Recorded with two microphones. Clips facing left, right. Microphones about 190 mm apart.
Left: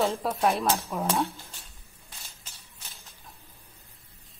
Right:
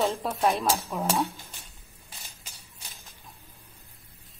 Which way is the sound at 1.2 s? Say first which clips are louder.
Even; 15° right (ahead or behind).